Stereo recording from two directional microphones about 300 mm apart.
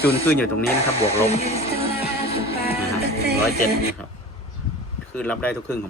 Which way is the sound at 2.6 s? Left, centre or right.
Left.